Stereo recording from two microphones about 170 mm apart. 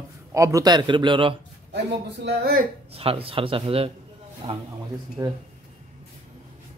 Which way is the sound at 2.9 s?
35° right (ahead or behind).